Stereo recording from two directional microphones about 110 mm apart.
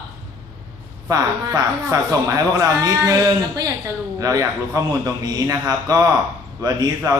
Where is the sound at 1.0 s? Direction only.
30° right (ahead or behind).